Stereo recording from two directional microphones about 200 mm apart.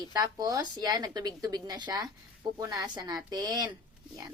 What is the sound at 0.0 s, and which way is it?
Speech, 20° right (ahead or behind).